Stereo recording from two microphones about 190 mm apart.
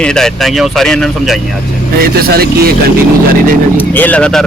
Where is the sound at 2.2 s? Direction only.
55° right (ahead or behind).